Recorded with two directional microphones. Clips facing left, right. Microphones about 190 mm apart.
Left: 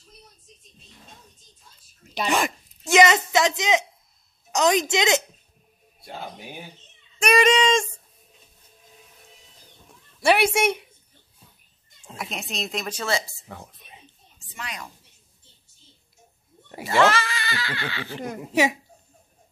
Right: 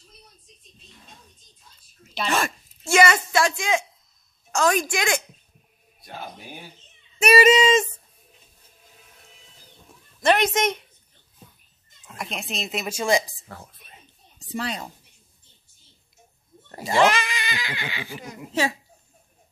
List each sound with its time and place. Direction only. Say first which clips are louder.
2.1 s a woman's voice: left 1 dB; 15° left (ahead or behind)
7.2 s speech: right 3 dB; 5° right (ahead or behind)
10.2 s speech: left 1 dB; 10° left (ahead or behind)
12.2 s speech: even; centre (ahead or behind); by 13.4 s 15° right (ahead or behind)
13.5 s speech: left 1 dB; 15° left (ahead or behind)
14.4 s a woman's voice: right 8 dB; 35° right (ahead or behind)
16.8 s speech: even; 15° right (ahead or behind)
18.5 s speech: left 3 dB; 15° left (ahead or behind)